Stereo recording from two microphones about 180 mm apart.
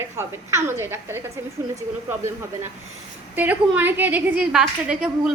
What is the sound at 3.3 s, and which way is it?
A woman's voice, 10° right (ahead or behind).